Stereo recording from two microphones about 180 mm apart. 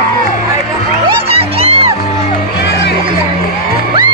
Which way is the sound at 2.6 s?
70° left (ahead or behind).